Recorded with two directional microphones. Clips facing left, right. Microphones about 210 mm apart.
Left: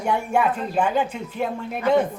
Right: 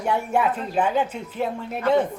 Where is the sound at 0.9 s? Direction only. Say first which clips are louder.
Even; 10° left (ahead or behind).